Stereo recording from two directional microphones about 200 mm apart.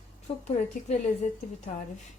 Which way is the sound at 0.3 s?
30° left (ahead or behind).